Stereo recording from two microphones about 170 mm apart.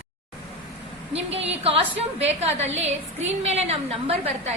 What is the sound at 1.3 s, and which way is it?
A woman's voice, 35° right (ahead or behind).